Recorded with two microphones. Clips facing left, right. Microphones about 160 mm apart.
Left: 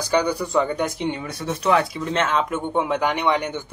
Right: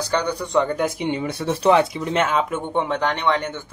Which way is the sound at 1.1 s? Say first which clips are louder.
Right 4 dB; 25° right (ahead or behind).